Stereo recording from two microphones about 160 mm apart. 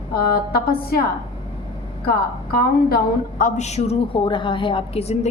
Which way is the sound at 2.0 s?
70° left (ahead or behind).